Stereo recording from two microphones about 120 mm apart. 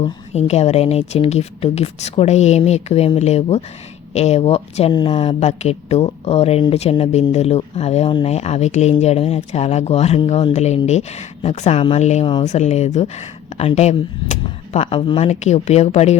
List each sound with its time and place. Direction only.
0.0 s speech: 65° left (ahead or behind)
4.9 s speech: 40° left (ahead or behind); by 14.3 s 70° left (ahead or behind)
14.7 s speech: 60° left (ahead or behind)
15.3 s speech: 70° left (ahead or behind)